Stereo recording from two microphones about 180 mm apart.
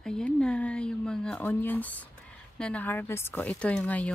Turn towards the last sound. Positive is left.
turn(degrees=5)  # may be behind; listen again after turning